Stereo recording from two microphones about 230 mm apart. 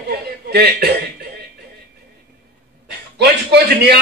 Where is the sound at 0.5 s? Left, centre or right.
Right.